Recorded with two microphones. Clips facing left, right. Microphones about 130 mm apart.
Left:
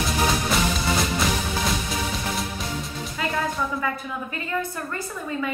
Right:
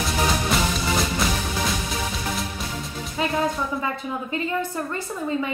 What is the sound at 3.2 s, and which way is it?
Music, 25° right (ahead or behind).